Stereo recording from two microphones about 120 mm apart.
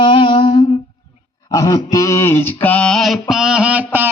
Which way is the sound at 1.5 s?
30° left (ahead or behind).